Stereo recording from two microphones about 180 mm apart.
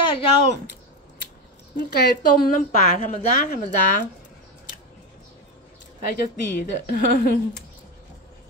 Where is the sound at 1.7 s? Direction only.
60° left (ahead or behind).